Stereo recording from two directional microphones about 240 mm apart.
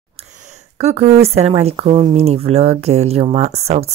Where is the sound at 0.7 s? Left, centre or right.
Right.